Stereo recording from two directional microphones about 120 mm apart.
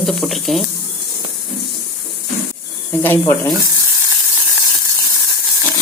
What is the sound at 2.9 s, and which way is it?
Speech, 15° left (ahead or behind).